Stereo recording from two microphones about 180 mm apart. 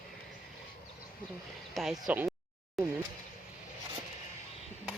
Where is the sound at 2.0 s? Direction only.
10° right (ahead or behind).